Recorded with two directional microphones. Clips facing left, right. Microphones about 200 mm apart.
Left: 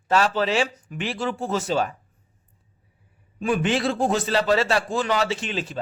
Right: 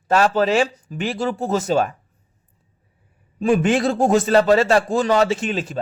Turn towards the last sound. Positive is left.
turn(degrees=-45)  # may be behind; listen again after turning